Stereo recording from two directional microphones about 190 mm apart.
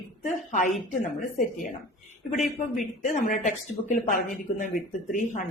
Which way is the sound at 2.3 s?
40° left (ahead or behind).